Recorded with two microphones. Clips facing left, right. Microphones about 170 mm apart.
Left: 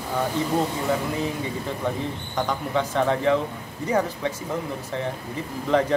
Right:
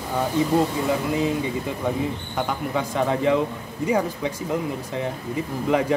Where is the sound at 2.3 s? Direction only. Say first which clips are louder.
Left 2 dB; 10° right (ahead or behind).